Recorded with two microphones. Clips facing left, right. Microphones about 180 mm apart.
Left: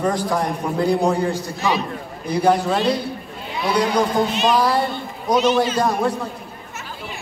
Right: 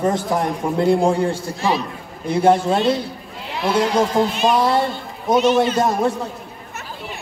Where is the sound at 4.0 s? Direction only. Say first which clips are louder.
Right 1 dB; 25° right (ahead or behind).